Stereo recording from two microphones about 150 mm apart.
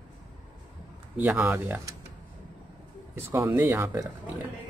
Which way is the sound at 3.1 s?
20° right (ahead or behind).